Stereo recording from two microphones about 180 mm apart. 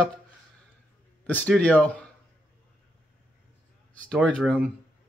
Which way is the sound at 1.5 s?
5° left (ahead or behind).